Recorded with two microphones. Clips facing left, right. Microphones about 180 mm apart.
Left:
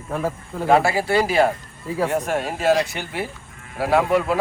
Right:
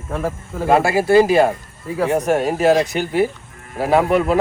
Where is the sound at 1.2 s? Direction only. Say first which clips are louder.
Right 5 dB; 20° right (ahead or behind).